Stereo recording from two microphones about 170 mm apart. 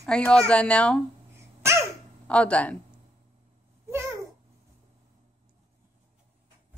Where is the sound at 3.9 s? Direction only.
15° right (ahead or behind).